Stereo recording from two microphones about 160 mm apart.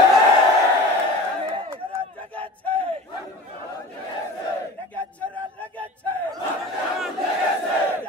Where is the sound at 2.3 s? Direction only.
10° left (ahead or behind).